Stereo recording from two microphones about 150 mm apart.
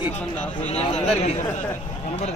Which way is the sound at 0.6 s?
45° left (ahead or behind).